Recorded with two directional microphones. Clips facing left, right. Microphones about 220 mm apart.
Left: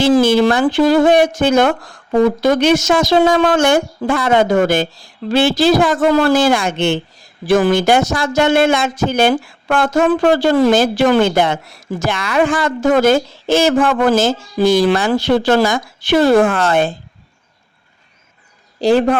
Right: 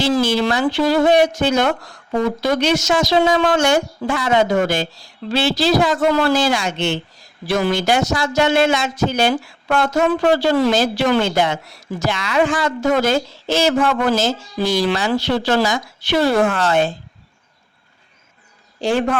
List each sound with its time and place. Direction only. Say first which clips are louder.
0.0 s speech: left 6 dB; 50° left (ahead or behind)
18.8 s a man's voice: left 6 dB; 35° left (ahead or behind)